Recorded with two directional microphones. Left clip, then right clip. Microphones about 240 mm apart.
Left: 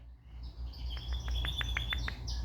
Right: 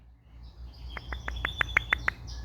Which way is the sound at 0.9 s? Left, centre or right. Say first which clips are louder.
Right 6 dB; right.